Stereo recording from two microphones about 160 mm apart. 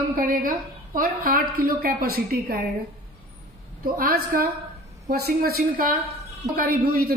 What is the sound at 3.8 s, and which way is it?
Speech, 65° right (ahead or behind).